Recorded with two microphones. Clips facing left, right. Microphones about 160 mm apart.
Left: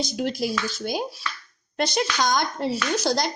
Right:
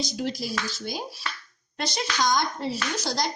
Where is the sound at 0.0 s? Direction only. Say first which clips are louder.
Left 3 dB; 55° left (ahead or behind).